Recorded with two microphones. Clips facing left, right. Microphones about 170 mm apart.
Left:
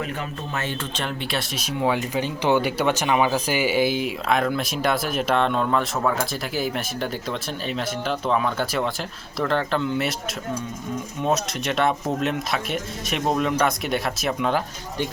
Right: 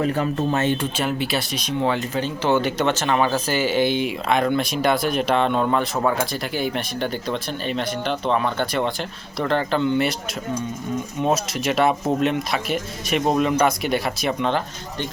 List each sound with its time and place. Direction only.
0.0 s speech: 35° right (ahead or behind)
0.6 s speech: 20° right (ahead or behind)
0.9 s speech: 5° right (ahead or behind)
11.2 s speech: centre (ahead or behind)